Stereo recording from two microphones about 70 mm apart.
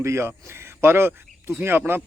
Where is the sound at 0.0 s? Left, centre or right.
Right.